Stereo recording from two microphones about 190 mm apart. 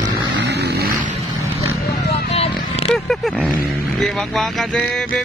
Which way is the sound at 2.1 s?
30° left (ahead or behind).